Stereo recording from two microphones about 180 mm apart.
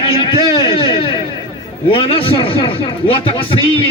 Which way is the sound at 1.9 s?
30° left (ahead or behind).